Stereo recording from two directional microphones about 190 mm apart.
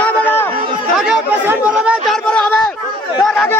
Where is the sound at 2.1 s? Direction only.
5° left (ahead or behind).